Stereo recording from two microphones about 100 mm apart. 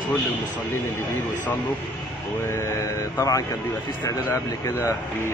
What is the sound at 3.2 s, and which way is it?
A man's voice, 35° left (ahead or behind).